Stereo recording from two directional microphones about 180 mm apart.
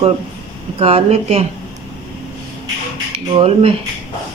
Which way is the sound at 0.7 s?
35° right (ahead or behind).